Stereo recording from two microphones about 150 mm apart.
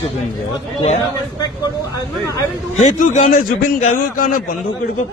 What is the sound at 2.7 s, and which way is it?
A man's voice, 55° left (ahead or behind).